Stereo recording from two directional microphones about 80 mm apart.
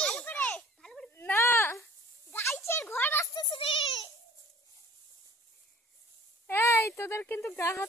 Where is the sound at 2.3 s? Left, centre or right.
Left.